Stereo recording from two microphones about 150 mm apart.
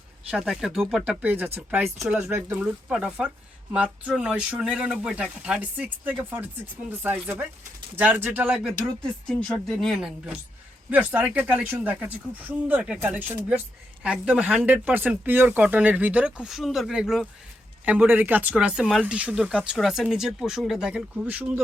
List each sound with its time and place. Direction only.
0.3 s speech: 5° right (ahead or behind)
9.2 s speech: 5° left (ahead or behind)